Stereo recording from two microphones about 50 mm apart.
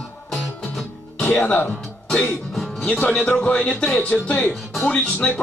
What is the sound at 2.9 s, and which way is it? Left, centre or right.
Speech, left.